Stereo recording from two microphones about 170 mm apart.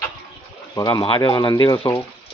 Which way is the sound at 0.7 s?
25° left (ahead or behind).